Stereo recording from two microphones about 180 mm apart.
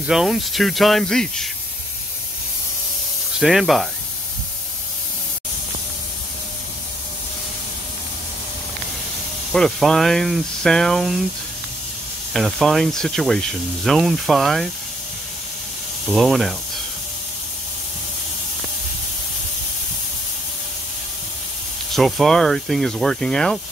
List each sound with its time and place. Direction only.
0.0 s speech: centre (ahead or behind)
3.3 s speech: centre (ahead or behind)
9.5 s speech: centre (ahead or behind)
12.4 s speech: centre (ahead or behind)
16.1 s speech: centre (ahead or behind)
21.9 s speech: centre (ahead or behind)